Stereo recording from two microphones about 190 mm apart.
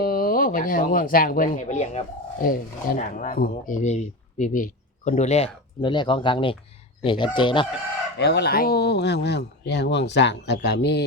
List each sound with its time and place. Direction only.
0.0 s speech: 50° left (ahead or behind); by 7.7 s 25° left (ahead or behind)
8.2 s speech: 60° left (ahead or behind)